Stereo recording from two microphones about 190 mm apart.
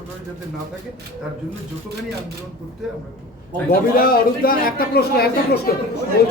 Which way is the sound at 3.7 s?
50° left (ahead or behind).